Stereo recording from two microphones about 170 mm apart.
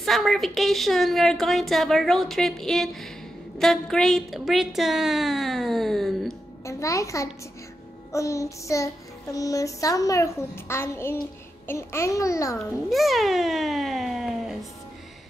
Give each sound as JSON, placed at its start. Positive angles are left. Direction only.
{"t": 0.0, "sound": "a woman's voice", "side_deg": 0}
{"t": 6.6, "sound": "a child's voice", "side_deg": 20}
{"t": 8.1, "sound": "child singing", "side_deg": 20}
{"t": 12.9, "sound": "a woman's voice", "side_deg": 0}